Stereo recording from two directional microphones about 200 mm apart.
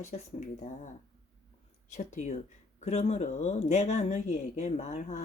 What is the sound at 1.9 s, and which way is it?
Speech, 35° left (ahead or behind).